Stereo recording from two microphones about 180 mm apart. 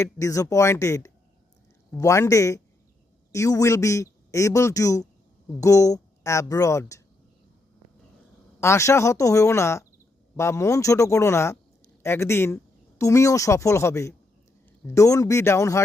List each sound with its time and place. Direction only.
0.0 s speech: 20° left (ahead or behind)
8.6 s speech: 15° left (ahead or behind)